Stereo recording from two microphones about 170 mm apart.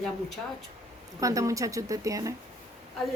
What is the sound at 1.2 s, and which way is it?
Speech, 20° right (ahead or behind).